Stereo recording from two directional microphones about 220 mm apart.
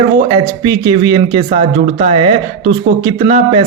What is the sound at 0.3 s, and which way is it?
Speech, 20° right (ahead or behind).